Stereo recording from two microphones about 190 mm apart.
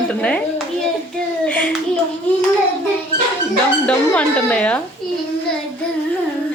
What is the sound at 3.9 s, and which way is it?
Speech, 5° left (ahead or behind).